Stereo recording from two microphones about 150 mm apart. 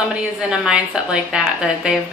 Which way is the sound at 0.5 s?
5° right (ahead or behind).